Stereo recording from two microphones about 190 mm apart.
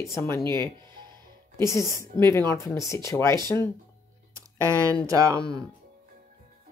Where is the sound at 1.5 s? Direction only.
15° left (ahead or behind).